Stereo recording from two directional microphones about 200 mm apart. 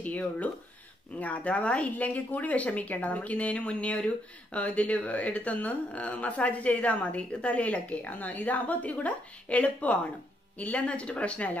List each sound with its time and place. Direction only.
0.0 s a woman's voice: 5° left (ahead or behind)